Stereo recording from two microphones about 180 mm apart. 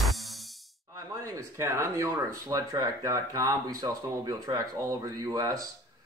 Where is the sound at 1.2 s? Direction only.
15° right (ahead or behind).